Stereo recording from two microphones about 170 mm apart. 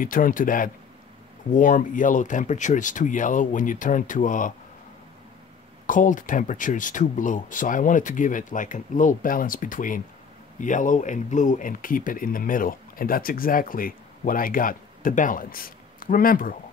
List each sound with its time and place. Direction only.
0.0 s speech: 55° left (ahead or behind)
5.9 s speech: 50° left (ahead or behind)